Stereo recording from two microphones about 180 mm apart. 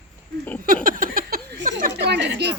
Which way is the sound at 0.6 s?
50° right (ahead or behind).